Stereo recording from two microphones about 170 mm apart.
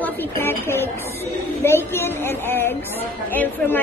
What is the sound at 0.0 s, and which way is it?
A woman's voice, 15° left (ahead or behind).